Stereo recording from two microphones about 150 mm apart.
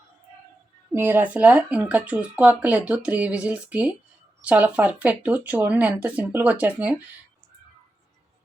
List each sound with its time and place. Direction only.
0.9 s speech: 10° right (ahead or behind)